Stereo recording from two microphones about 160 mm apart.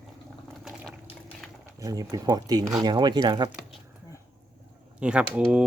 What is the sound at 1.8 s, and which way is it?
Speech, 25° right (ahead or behind).